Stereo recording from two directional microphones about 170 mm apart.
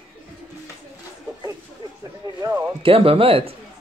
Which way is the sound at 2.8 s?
35° right (ahead or behind).